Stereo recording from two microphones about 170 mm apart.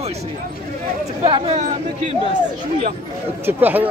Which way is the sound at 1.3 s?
30° right (ahead or behind).